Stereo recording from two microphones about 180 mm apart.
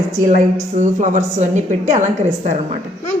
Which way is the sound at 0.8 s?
45° right (ahead or behind).